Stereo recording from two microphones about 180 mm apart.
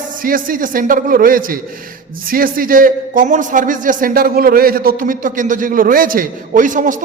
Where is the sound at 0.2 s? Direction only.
50° right (ahead or behind).